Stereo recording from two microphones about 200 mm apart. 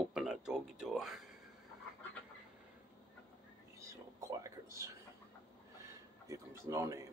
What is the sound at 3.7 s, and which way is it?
Whispering, 15° right (ahead or behind).